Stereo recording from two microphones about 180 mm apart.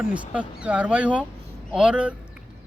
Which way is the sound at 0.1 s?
5° right (ahead or behind).